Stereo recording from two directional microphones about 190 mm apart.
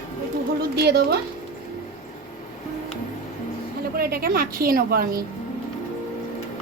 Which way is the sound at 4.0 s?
50° right (ahead or behind).